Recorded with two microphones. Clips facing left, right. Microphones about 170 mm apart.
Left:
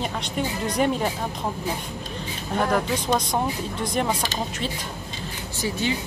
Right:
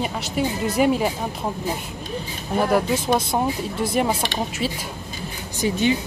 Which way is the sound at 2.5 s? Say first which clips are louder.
Right 4 dB; 10° right (ahead or behind).